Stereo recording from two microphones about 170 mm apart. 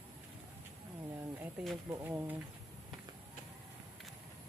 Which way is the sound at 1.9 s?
15° right (ahead or behind).